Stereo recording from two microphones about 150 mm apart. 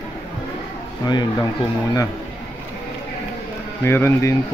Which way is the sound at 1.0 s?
25° left (ahead or behind).